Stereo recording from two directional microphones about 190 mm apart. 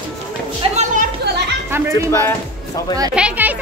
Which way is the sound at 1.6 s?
10° right (ahead or behind).